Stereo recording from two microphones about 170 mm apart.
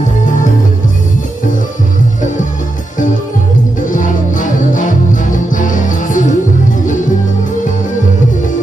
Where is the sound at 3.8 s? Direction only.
50° left (ahead or behind).